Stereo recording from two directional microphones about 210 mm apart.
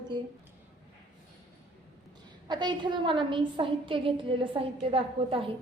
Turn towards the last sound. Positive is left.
turn(degrees=-25)  # may be behind; listen again after turning